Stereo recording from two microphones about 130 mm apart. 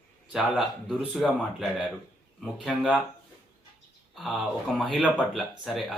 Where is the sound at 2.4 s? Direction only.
Centre (ahead or behind).